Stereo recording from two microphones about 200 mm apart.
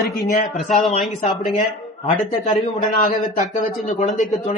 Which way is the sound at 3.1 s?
40° left (ahead or behind).